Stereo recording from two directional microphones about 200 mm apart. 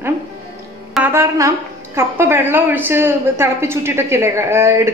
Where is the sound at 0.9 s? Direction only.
10° right (ahead or behind).